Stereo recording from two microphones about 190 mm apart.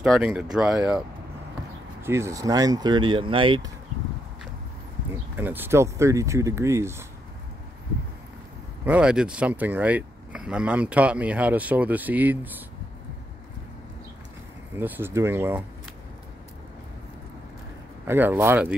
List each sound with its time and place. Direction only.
0.0 s speech: 5° right (ahead or behind); by 3.7 s 25° right (ahead or behind)
5.1 s speech: 10° right (ahead or behind)
8.8 s speech: 5° right (ahead or behind)
14.8 s speech: 10° right (ahead or behind)
18.0 s speech: 10° right (ahead or behind)